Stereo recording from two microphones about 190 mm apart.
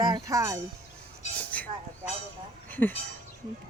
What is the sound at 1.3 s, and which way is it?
Vehicle, 10° left (ahead or behind).